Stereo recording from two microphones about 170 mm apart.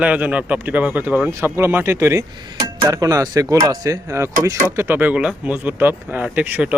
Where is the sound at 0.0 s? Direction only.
10° right (ahead or behind).